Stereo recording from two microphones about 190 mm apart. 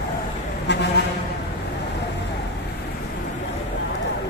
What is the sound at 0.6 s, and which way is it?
Vehicle, 65° left (ahead or behind).